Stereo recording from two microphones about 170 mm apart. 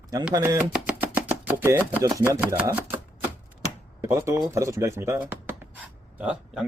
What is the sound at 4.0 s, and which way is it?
A man's voice, 15° right (ahead or behind).